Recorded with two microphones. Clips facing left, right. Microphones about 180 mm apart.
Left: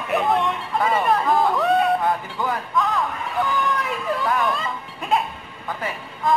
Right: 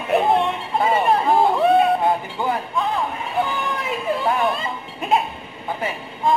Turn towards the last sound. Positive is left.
turn(degrees=-25)  # may be behind; listen again after turning